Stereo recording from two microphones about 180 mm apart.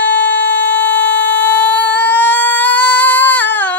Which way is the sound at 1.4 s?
10° left (ahead or behind).